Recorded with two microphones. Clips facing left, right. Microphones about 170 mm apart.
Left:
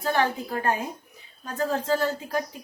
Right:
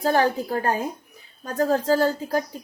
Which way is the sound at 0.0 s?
35° right (ahead or behind).